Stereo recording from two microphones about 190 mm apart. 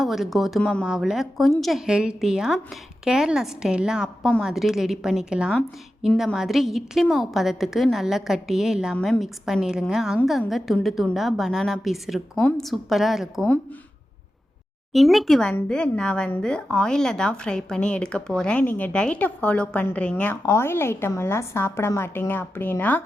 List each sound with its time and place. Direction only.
0.0 s a woman's voice: centre (ahead or behind)
14.9 s speech: centre (ahead or behind)